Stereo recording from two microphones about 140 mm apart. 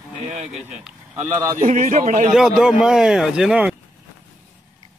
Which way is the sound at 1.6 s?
60° right (ahead or behind).